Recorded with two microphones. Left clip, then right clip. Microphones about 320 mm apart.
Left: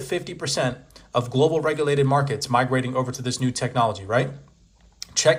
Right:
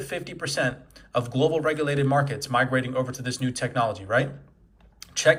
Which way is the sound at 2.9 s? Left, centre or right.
Left.